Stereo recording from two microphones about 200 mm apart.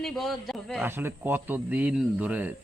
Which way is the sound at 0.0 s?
Centre (ahead or behind).